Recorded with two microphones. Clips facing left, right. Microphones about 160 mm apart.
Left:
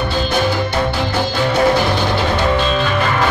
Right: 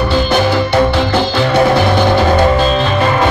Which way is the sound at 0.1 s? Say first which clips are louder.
Right 5 dB; 80° right.